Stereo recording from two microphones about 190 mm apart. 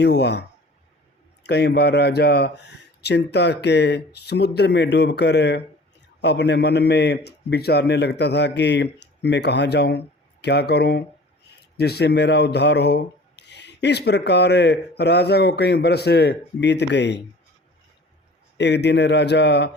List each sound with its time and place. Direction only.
0.0 s speech: 60° left (ahead or behind)
1.5 s speech: 60° left (ahead or behind)
18.5 s speech: 65° left (ahead or behind)